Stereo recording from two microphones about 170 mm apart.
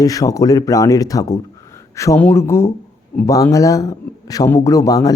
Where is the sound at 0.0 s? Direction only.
20° left (ahead or behind).